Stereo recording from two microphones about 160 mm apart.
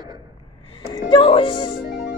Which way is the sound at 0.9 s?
30° left (ahead or behind).